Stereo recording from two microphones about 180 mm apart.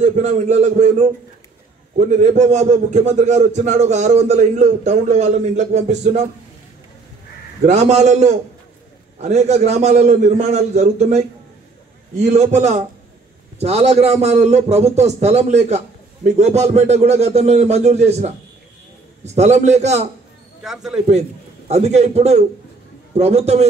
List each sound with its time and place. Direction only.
0.0 s a man's voice: 40° right (ahead or behind)
7.6 s a man's voice: 40° right (ahead or behind)
20.6 s speech: centre (ahead or behind)
21.1 s a man's voice: 40° right (ahead or behind)